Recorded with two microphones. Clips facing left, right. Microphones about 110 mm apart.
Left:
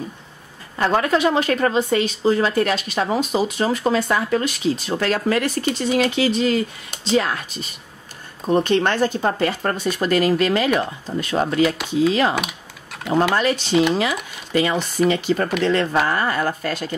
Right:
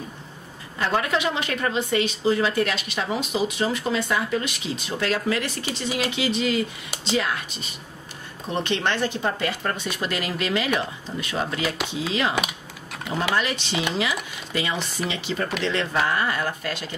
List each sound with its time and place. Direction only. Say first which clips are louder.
0.7 s speech: left 5 dB; 40° left (ahead or behind)
8.5 s speech: left 7 dB; 45° left (ahead or behind)
12.4 s typing: left 1 dB; centre (ahead or behind)
13.3 s speech: left 6 dB; 40° left (ahead or behind)